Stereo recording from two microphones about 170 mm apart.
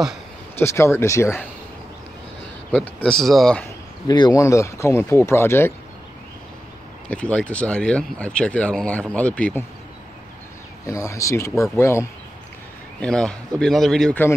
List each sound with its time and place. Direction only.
0.6 s speech: 15° left (ahead or behind)
2.7 s speech: 10° left (ahead or behind)
4.1 s speech: 25° left (ahead or behind)
7.1 s speech: 5° left (ahead or behind)
10.9 s speech: 20° left (ahead or behind)
13.0 s speech: 5° left (ahead or behind)